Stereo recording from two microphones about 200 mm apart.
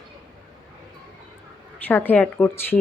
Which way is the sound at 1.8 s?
10° left (ahead or behind).